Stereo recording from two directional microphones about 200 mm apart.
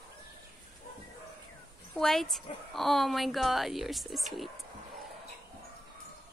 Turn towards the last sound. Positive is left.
turn(degrees=0)  # may be behind; listen again after turning